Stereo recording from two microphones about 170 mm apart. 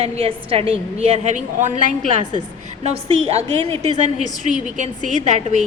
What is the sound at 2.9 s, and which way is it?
A woman's voice, 35° right (ahead or behind).